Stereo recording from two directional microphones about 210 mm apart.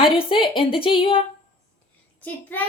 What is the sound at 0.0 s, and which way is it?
A woman's voice, 25° left (ahead or behind).